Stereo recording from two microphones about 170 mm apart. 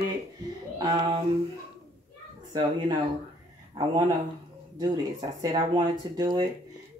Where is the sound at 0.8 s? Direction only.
30° right (ahead or behind).